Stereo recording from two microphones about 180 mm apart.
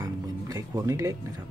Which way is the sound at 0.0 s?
20° right (ahead or behind).